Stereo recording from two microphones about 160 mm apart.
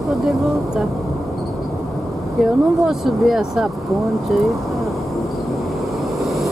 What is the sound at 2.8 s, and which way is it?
Speech, centre (ahead or behind).